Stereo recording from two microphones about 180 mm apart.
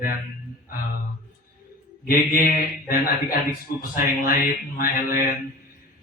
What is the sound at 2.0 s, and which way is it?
A man's voice, 50° left (ahead or behind).